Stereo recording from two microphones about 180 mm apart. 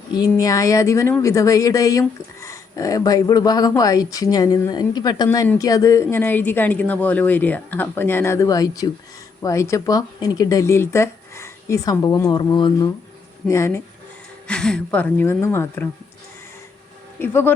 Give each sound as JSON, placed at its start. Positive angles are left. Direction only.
{"t": 0.1, "sound": "speech", "side_deg": 20}
{"t": 14.4, "sound": "speech", "side_deg": 5}
{"t": 17.2, "sound": "speech", "side_deg": 10}